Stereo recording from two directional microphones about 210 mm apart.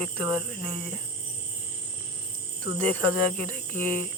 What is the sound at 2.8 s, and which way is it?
Speech, 30° right (ahead or behind).